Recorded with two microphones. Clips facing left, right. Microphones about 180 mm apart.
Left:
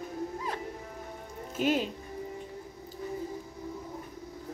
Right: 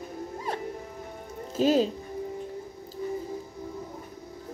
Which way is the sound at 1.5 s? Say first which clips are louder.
Right 6 dB; 35° right (ahead or behind).